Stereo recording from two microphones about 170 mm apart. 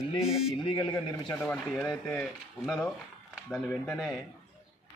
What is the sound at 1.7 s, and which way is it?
Speech, centre (ahead or behind).